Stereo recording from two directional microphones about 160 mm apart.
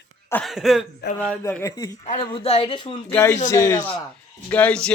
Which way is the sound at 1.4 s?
15° left (ahead or behind).